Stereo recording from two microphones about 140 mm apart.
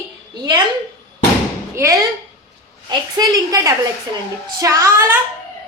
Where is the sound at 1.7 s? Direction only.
20° right (ahead or behind).